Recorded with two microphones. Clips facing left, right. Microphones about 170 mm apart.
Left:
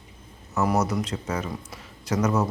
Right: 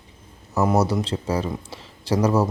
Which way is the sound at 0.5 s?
30° right (ahead or behind).